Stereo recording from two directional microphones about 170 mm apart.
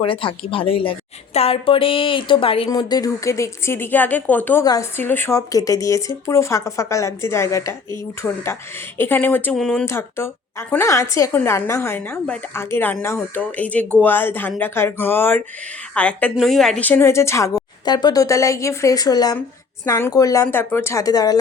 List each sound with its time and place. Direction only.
0.0 s a woman's voice: 30° left (ahead or behind)
8.2 s a woman's voice: 5° left (ahead or behind); by 21.3 s 20° left (ahead or behind)